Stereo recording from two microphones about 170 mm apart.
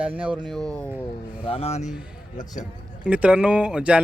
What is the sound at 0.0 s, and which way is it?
Speech, 5° right (ahead or behind).